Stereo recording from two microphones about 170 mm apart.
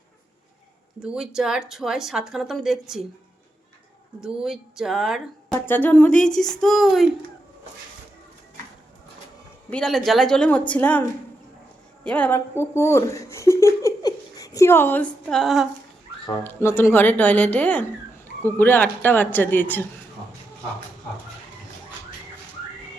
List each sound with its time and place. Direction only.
1.0 s speech: 5° right (ahead or behind)
4.2 s speech: 5° right (ahead or behind)
5.5 s speech: 10° left (ahead or behind)
9.6 s speech: 5° left (ahead or behind)
12.0 s speech: 10° left (ahead or behind)
16.2 s speech: 20° left (ahead or behind)